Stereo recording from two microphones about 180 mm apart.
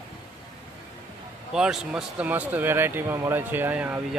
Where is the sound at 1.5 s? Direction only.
5° right (ahead or behind).